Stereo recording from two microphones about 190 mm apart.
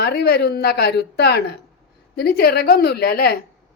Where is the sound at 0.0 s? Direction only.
55° left (ahead or behind).